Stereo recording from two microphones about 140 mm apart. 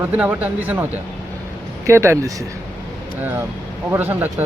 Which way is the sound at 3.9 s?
15° right (ahead or behind).